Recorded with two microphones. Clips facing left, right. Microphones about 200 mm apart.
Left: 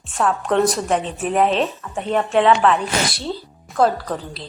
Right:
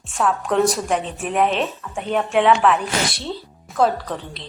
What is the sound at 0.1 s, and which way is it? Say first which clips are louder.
A woman's voice: left 1 dB; centre (ahead or behind).